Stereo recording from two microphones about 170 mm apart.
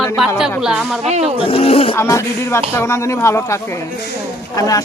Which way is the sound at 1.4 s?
35° left (ahead or behind).